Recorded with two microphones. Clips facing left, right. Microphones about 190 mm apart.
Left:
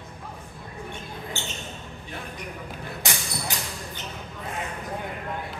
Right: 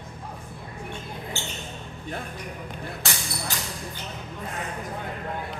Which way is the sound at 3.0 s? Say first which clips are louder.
Left 3 dB; 15° left (ahead or behind).